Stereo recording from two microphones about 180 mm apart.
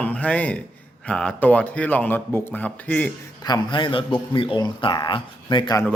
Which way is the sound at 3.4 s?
20° left (ahead or behind).